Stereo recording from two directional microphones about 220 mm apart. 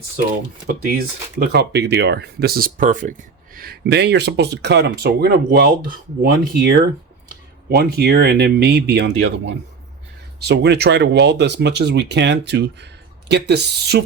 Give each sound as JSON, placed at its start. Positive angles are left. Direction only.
{"t": 0.8, "sound": "speech", "side_deg": -45}